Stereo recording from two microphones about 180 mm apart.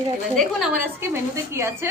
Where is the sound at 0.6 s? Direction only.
10° right (ahead or behind).